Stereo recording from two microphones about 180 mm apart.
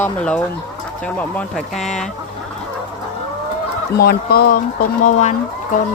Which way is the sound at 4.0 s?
60° left (ahead or behind).